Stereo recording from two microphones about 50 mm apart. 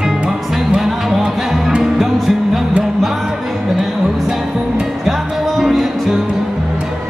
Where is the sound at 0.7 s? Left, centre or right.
Centre.